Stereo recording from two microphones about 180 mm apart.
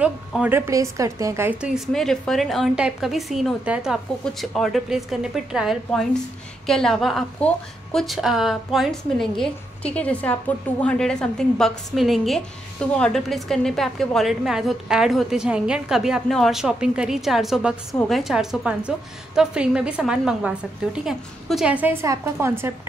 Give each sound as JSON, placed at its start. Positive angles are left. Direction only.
{"t": 0.0, "sound": "a woman's voice", "side_deg": -5}